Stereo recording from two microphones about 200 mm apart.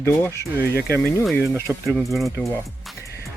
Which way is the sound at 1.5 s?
10° right (ahead or behind).